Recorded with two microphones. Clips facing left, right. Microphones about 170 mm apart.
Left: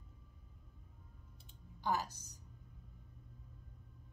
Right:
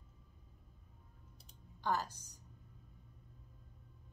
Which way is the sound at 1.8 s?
10° left (ahead or behind).